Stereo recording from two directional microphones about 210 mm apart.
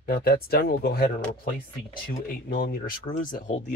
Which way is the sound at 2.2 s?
40° left (ahead or behind).